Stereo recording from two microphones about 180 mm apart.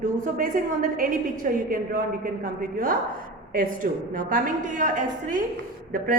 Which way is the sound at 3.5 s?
50° right (ahead or behind).